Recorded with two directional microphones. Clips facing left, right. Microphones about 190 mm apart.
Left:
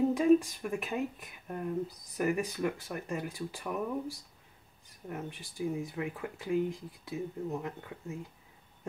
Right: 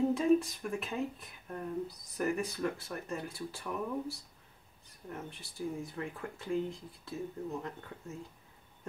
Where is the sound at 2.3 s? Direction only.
15° left (ahead or behind).